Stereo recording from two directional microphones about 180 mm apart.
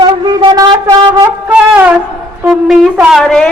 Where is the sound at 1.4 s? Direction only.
10° right (ahead or behind).